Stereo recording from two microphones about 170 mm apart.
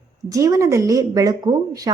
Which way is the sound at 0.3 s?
20° right (ahead or behind).